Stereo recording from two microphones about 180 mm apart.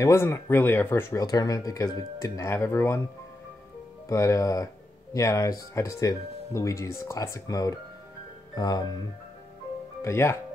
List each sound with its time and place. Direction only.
0.0 s speech: 15° left (ahead or behind)
4.1 s speech: 15° left (ahead or behind)
10.0 s speech: 15° left (ahead or behind)